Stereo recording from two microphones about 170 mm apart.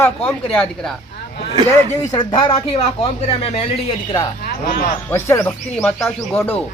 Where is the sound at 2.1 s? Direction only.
30° left (ahead or behind).